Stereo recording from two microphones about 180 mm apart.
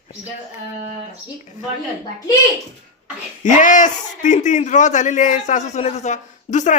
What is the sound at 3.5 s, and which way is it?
A man's voice, 45° left (ahead or behind).